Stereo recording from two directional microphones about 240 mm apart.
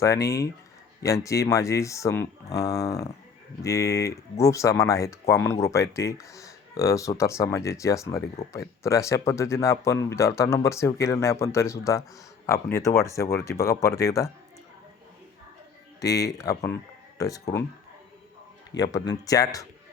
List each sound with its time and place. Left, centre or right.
0.0 s speech: centre
8.4 s speech: left
8.8 s speech: centre
16.0 s speech: centre
18.8 s speech: centre